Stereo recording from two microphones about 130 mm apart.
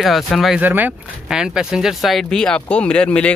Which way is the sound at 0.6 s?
15° right (ahead or behind).